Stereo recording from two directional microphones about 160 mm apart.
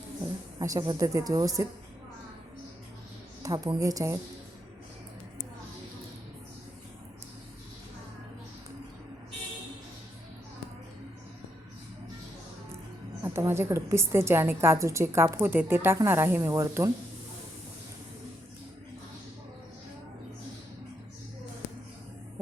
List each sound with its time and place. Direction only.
0.6 s speech: 20° right (ahead or behind)
3.4 s speech: 25° right (ahead or behind)
13.2 s a woman's voice: 15° right (ahead or behind)